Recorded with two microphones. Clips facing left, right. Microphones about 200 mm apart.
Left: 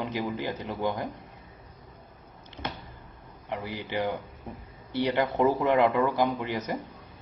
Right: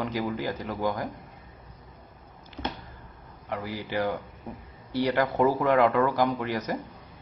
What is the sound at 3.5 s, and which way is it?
A man's voice, 15° left (ahead or behind).